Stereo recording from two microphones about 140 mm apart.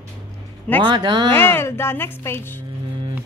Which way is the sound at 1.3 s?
15° left (ahead or behind).